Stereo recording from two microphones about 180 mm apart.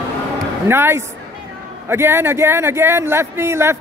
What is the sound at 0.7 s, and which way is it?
A man's voice, 15° right (ahead or behind).